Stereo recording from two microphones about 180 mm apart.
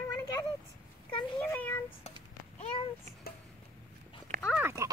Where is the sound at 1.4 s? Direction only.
10° left (ahead or behind).